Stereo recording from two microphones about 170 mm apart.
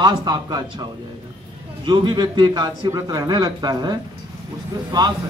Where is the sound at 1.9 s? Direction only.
25° right (ahead or behind).